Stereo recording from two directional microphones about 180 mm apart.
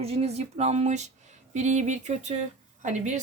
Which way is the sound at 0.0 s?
35° right (ahead or behind).